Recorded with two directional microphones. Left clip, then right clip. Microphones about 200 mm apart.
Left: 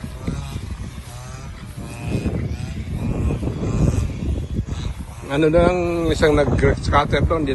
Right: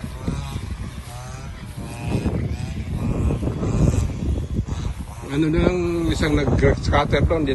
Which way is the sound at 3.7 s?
40° right (ahead or behind).